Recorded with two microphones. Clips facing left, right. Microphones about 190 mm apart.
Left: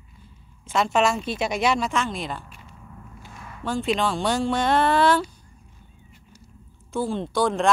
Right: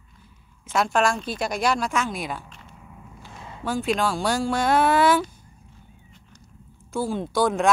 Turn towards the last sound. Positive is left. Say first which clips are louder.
# right 1 dB
turn(degrees=-5)  # may be behind; listen again after turning